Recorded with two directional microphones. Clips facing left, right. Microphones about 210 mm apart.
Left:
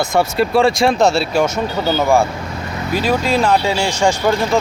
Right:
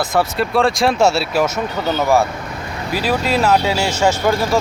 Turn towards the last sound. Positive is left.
turn(degrees=-5)  # may be behind; listen again after turning